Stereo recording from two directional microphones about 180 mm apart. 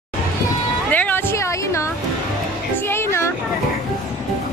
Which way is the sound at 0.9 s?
10° left (ahead or behind).